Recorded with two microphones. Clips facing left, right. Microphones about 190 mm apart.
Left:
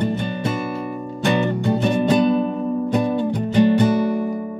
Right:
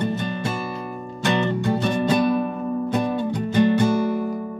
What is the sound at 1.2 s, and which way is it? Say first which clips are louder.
Music: left 2 dB; 15° left (ahead or behind).